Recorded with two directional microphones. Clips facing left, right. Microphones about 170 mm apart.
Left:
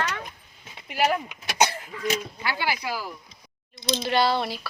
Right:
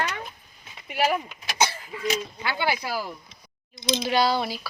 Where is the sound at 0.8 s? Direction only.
Centre (ahead or behind).